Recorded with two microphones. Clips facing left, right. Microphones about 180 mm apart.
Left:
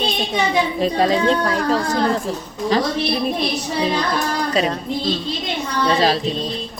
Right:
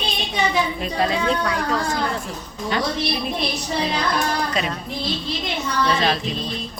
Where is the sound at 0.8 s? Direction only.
35° left (ahead or behind).